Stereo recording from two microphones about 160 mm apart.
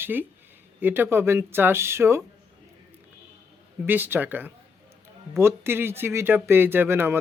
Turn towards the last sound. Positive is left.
turn(degrees=-15)  # may be behind; listen again after turning